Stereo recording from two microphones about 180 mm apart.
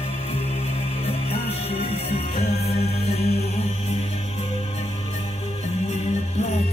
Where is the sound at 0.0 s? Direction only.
35° left (ahead or behind).